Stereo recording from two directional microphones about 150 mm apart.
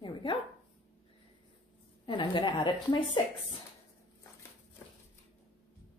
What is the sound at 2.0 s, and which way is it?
A woman's voice, 35° left (ahead or behind).